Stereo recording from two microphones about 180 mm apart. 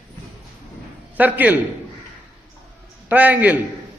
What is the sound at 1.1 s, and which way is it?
Speech, 10° right (ahead or behind).